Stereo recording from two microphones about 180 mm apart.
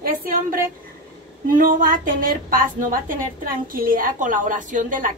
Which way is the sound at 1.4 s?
50° right (ahead or behind).